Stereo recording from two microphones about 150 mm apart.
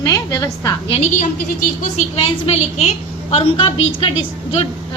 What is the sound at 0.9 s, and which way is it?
A woman's voice, 45° left (ahead or behind).